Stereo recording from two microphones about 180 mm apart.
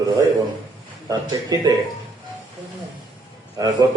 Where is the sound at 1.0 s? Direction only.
20° right (ahead or behind).